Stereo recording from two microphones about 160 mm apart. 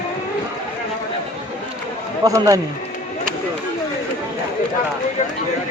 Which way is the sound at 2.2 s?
20° right (ahead or behind).